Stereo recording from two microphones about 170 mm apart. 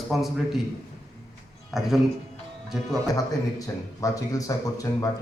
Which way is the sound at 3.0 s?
20° left (ahead or behind).